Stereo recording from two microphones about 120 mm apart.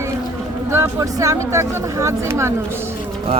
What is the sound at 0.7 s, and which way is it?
Speech, 25° right (ahead or behind).